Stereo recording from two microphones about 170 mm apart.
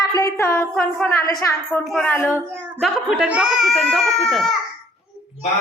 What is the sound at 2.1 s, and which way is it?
Speech, 10° left (ahead or behind).